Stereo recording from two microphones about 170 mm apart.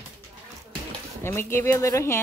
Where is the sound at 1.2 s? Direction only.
15° left (ahead or behind).